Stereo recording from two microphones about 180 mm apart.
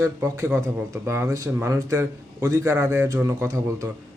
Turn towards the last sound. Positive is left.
turn(degrees=-15)  # may be behind; listen again after turning